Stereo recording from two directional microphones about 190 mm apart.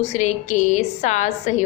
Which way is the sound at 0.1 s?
35° left (ahead or behind).